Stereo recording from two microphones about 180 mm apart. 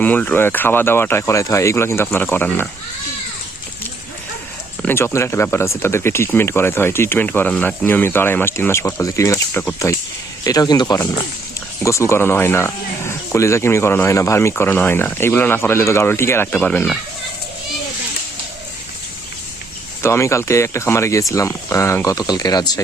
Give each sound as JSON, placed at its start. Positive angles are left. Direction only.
{"t": 0.0, "sound": "speech", "side_deg": 10}
{"t": 4.8, "sound": "speech", "side_deg": 10}
{"t": 10.4, "sound": "speech", "side_deg": 20}
{"t": 20.0, "sound": "speech", "side_deg": 15}